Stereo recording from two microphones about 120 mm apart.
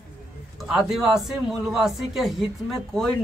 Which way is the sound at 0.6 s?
Centre (ahead or behind).